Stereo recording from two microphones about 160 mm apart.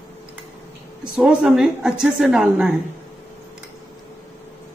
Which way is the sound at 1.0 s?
5° right (ahead or behind).